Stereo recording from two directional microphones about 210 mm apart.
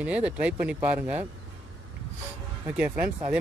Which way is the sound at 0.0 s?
5° right (ahead or behind).